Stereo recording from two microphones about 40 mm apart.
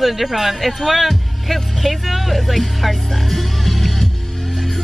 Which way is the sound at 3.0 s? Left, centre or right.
Centre.